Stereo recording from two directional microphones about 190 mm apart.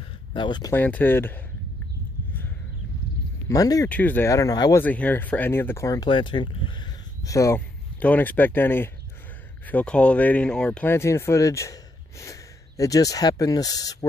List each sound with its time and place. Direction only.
0.3 s speech: 25° left (ahead or behind)
0.7 s speech: 10° left (ahead or behind)
3.4 s speech: 20° left (ahead or behind)
4.8 s speech: 10° left (ahead or behind)